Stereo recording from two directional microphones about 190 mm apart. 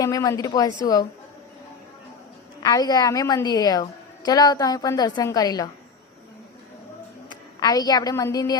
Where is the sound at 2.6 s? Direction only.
20° left (ahead or behind).